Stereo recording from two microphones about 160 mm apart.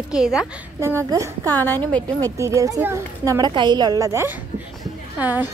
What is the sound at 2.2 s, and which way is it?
A woman's voice, 20° right (ahead or behind).